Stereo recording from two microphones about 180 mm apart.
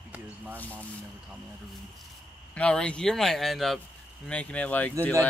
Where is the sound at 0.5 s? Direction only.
10° left (ahead or behind).